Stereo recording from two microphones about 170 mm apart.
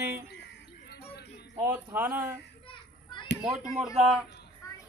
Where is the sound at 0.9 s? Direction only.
70° left (ahead or behind).